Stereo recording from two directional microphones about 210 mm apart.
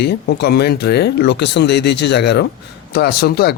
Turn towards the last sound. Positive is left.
turn(degrees=50)  # may be behind; listen again after turning